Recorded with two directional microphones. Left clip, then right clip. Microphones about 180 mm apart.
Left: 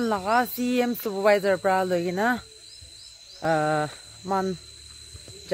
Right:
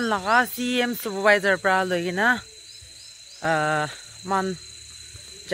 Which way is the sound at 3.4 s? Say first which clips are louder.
Right 1 dB; 5° left (ahead or behind).